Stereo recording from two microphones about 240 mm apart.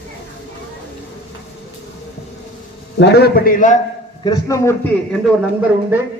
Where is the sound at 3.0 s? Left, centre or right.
Left.